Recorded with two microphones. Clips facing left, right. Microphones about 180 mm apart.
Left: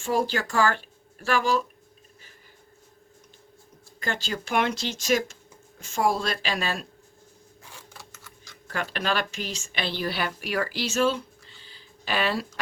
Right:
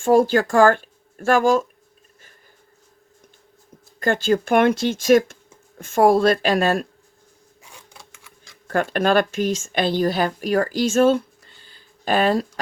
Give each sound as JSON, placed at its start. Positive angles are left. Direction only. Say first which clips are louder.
{"t": 0.0, "sound": "speech", "louder": "right 10 dB", "side_deg": -50}
{"t": 4.0, "sound": "speech", "louder": "right 12 dB", "side_deg": -50}
{"t": 8.6, "sound": "speech", "louder": "right 10 dB", "side_deg": -50}